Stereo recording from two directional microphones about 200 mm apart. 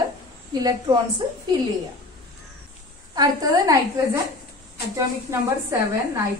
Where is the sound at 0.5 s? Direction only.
20° right (ahead or behind).